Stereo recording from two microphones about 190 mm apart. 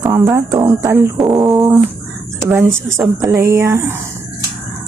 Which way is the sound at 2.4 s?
10° right (ahead or behind).